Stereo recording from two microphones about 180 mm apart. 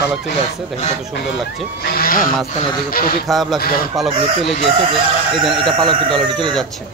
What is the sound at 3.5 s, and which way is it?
Speech, 55° left (ahead or behind).